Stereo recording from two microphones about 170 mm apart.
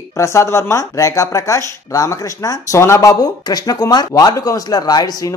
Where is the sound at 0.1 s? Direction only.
15° left (ahead or behind).